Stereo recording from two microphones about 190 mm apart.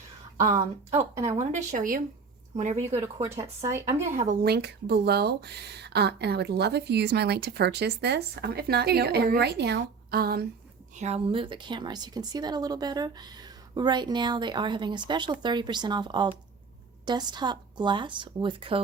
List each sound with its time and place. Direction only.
1.4 s speech: 40° right (ahead or behind)
3.2 s speech: 15° right (ahead or behind)
4.4 s speech: 60° right (ahead or behind)
10.9 s a woman's voice: 35° right (ahead or behind)